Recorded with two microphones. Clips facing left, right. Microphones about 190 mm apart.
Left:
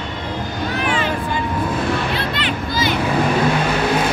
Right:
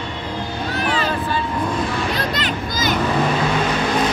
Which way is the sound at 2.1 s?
40° right (ahead or behind).